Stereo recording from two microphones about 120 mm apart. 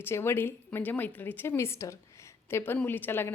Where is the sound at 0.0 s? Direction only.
20° left (ahead or behind).